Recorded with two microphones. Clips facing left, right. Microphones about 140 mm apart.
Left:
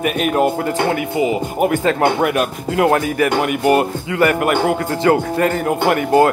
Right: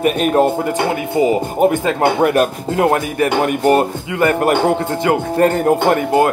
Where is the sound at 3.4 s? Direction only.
35° right (ahead or behind).